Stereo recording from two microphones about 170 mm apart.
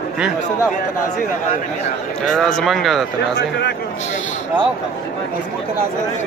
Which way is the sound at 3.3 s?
75° left (ahead or behind).